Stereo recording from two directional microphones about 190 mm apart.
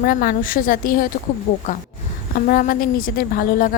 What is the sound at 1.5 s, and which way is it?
Speech, 30° left (ahead or behind).